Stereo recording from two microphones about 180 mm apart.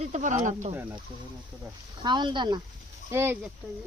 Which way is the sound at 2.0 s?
25° right (ahead or behind).